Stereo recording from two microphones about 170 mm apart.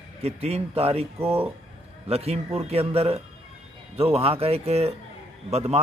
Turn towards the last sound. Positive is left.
turn(degrees=-40)  # may be behind; listen again after turning